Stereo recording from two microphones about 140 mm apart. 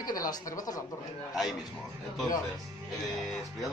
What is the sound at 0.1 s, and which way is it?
Speech, 25° left (ahead or behind).